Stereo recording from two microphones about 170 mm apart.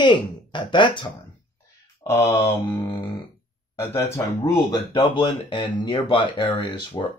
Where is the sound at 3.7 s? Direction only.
15° left (ahead or behind).